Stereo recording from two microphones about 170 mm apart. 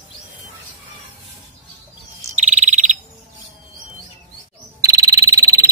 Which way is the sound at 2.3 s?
45° right (ahead or behind).